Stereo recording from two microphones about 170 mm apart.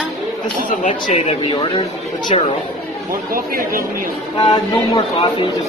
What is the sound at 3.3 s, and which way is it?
Speech, 55° right (ahead or behind).